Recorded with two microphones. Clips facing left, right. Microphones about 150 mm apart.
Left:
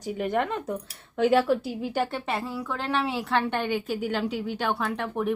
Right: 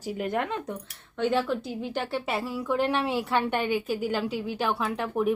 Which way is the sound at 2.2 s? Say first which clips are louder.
Right 1 dB; 10° right (ahead or behind).